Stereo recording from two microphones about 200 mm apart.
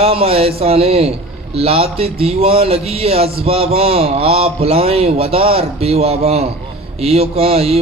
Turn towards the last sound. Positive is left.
turn(degrees=-30)  # may be behind; listen again after turning